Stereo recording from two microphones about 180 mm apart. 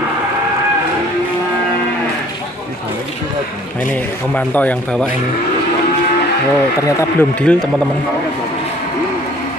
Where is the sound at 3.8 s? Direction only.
10° left (ahead or behind).